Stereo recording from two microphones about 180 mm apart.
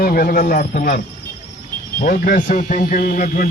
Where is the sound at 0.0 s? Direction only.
55° left (ahead or behind).